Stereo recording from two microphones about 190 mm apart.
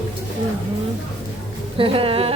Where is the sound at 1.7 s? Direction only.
30° right (ahead or behind).